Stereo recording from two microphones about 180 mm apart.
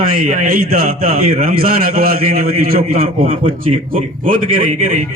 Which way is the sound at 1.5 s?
55° right (ahead or behind).